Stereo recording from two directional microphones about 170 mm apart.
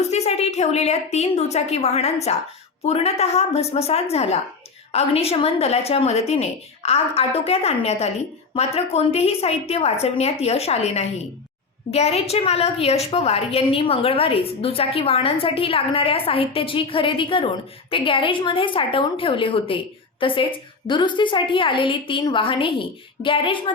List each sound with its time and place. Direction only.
0.0 s a woman's voice: 40° left (ahead or behind)